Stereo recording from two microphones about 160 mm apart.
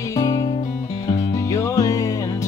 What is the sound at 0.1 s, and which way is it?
Music, 20° left (ahead or behind).